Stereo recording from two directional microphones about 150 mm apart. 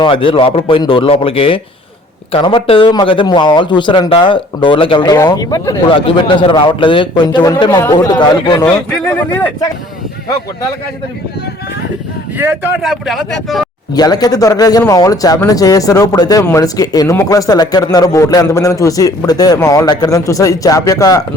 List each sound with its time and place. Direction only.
0.0 s speech: 35° left (ahead or behind)
5.9 s speech: 35° left (ahead or behind)
9.0 s speech: 10° left (ahead or behind)
12.4 s speech: 15° right (ahead or behind)
12.8 s speech: centre (ahead or behind)
13.9 s a man's voice: 25° left (ahead or behind)